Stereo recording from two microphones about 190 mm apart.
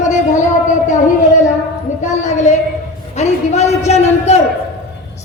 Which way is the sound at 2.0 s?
40° left (ahead or behind).